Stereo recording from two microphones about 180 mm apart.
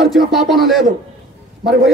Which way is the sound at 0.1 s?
Centre (ahead or behind).